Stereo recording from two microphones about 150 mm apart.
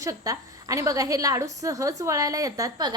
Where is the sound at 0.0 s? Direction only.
20° right (ahead or behind).